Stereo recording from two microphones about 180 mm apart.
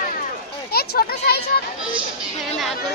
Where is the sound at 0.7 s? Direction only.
60° left (ahead or behind).